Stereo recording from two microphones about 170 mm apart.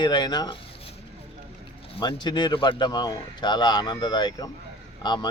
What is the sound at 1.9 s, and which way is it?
Speech, 25° left (ahead or behind).